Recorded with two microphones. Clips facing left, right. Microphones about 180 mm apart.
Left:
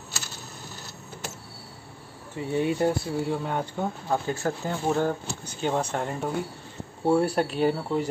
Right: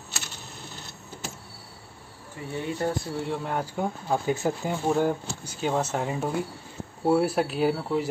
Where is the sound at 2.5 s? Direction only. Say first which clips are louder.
Left 5 dB; 15° left (ahead or behind).